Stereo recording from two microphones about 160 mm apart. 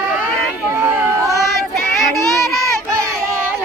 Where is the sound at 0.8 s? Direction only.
15° right (ahead or behind).